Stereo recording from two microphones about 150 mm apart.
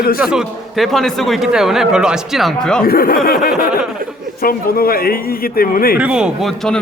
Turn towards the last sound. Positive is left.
turn(degrees=0)  # may be behind; listen again after turning